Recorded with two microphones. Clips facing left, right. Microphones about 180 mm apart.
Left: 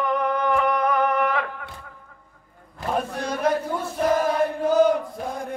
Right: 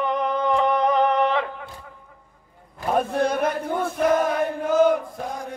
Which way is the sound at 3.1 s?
55° right (ahead or behind).